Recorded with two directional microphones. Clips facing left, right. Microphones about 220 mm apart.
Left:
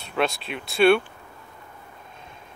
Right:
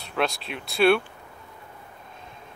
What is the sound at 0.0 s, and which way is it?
Speech, centre (ahead or behind).